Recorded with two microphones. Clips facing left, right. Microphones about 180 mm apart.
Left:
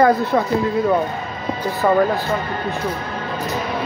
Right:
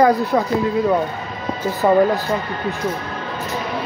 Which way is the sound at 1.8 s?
15° right (ahead or behind).